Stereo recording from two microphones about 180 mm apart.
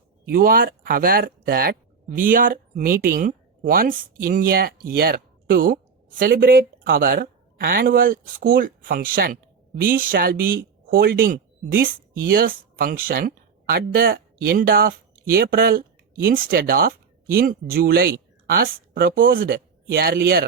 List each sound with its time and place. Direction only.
0.3 s speech: 55° right (ahead or behind)